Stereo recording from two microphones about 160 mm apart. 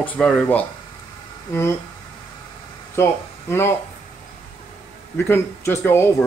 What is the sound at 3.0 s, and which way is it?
Speech, 15° left (ahead or behind).